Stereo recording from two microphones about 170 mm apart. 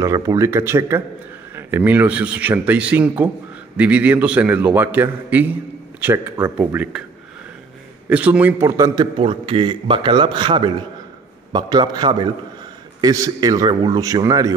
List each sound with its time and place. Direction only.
0.0 s a man's voice: 20° right (ahead or behind)
8.1 s a man's voice: 10° right (ahead or behind)